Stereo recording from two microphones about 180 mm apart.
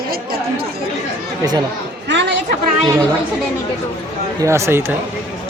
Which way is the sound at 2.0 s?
75° right (ahead or behind).